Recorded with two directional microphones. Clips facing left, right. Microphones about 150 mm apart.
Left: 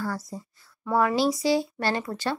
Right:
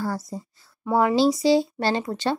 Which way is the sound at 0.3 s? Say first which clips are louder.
Right 4 dB; 25° right (ahead or behind).